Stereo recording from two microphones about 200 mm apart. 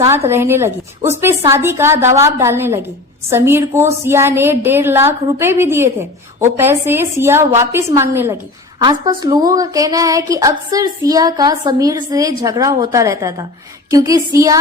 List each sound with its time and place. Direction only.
0.3 s a woman's voice: 10° right (ahead or behind)